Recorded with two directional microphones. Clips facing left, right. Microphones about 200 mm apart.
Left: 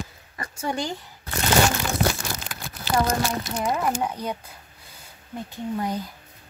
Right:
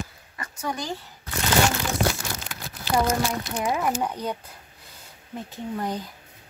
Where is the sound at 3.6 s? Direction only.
5° right (ahead or behind).